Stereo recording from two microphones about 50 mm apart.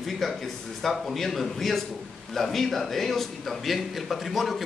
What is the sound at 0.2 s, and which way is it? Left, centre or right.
A man's voice, centre.